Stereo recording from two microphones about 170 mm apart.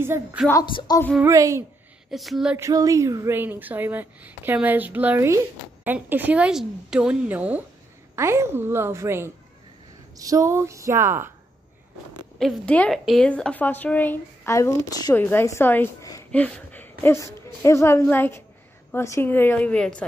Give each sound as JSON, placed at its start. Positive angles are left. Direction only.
{"t": 0.0, "sound": "a woman's voice", "side_deg": -10}
{"t": 0.7, "sound": "speech", "side_deg": 25}
{"t": 1.2, "sound": "a child's voice", "side_deg": -20}
{"t": 2.0, "sound": "speech", "side_deg": 0}
{"t": 2.5, "sound": "a woman's voice", "side_deg": -20}
{"t": 12.4, "sound": "a woman's voice", "side_deg": 5}
{"t": 16.3, "sound": "a sound", "side_deg": 5}
{"t": 17.6, "sound": "a woman's voice", "side_deg": 15}